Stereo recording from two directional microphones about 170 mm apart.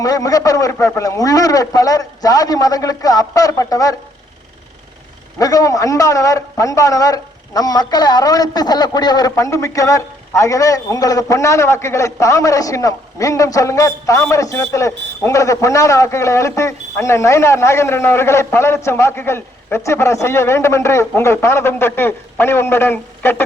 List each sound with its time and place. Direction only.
0.0 s a man's voice: 20° left (ahead or behind)
5.4 s a man's voice: 20° left (ahead or behind)